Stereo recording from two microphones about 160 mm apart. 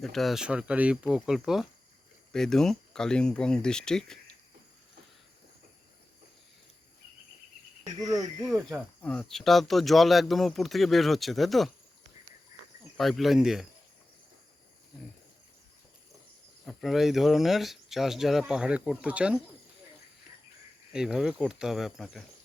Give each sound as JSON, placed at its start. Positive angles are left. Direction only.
{"t": 0.0, "sound": "speech", "side_deg": 0}
{"t": 8.0, "sound": "speech", "side_deg": -25}
{"t": 9.0, "sound": "speech", "side_deg": 5}
{"t": 13.0, "sound": "speech", "side_deg": 0}
{"t": 16.6, "sound": "speech", "side_deg": 0}
{"t": 20.9, "sound": "speech", "side_deg": -5}